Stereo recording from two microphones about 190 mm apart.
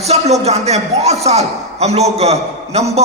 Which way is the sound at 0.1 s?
35° right (ahead or behind).